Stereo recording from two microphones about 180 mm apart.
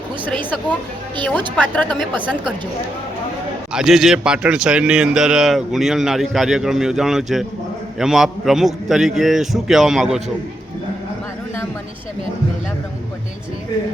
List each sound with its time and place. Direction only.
1.5 s a woman's voice: 10° left (ahead or behind)
1.9 s a woman's voice: 25° right (ahead or behind)
3.7 s a man's voice: 5° right (ahead or behind)